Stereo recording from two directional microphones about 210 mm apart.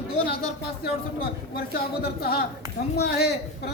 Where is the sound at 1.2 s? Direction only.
45° left (ahead or behind).